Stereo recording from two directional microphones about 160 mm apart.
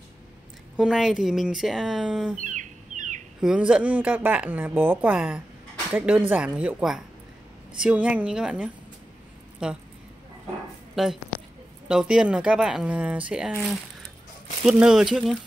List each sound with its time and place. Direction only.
0.7 s speech: 5° right (ahead or behind)
2.3 s a sound: 50° right (ahead or behind)
3.3 s speech: 5° right (ahead or behind)
11.0 s speech: centre (ahead or behind)